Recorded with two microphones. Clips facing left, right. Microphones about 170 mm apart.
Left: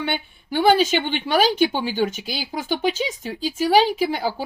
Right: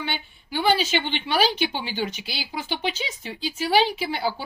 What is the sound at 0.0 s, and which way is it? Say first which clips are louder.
A woman's voice: left 5 dB; 50° left (ahead or behind).